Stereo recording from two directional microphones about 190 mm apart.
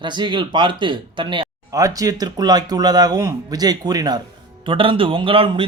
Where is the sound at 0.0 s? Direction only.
25° right (ahead or behind).